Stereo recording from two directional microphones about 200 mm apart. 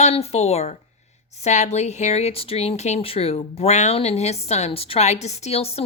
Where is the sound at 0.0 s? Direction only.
30° left (ahead or behind).